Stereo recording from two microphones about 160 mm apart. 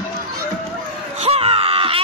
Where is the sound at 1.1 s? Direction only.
40° right (ahead or behind).